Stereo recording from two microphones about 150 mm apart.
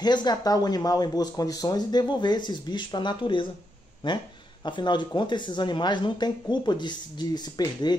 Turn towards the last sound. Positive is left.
turn(degrees=30)  # may be behind; listen again after turning